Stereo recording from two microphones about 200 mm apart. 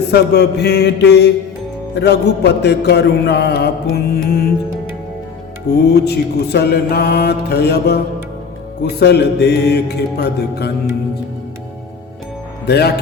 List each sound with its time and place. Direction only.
0.1 s mantra: 55° left (ahead or behind)
5.7 s mantra: 55° left (ahead or behind)
12.6 s speech: 55° left (ahead or behind)